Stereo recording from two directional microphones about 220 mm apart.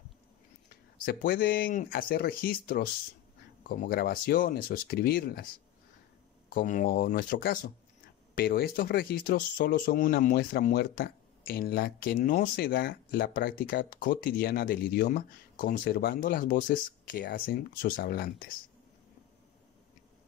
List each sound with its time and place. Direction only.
1.0 s speech: 45° left (ahead or behind)
6.5 s speech: 35° left (ahead or behind)